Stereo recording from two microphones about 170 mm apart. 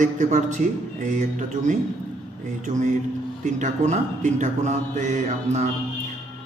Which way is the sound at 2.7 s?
45° right (ahead or behind).